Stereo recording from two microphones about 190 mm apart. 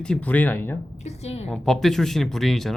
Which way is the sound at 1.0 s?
35° left (ahead or behind).